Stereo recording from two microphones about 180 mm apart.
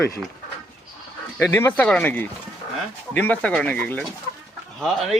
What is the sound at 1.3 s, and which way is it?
A man's voice, 15° left (ahead or behind).